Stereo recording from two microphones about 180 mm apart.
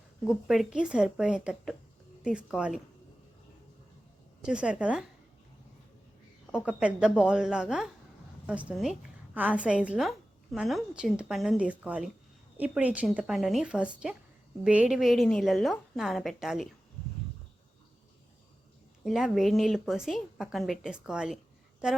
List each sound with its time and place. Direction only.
0.3 s a woman's voice: centre (ahead or behind)
4.4 s a woman's voice: 5° right (ahead or behind)
6.5 s a woman's voice: 5° right (ahead or behind)
19.0 s a woman's voice: centre (ahead or behind)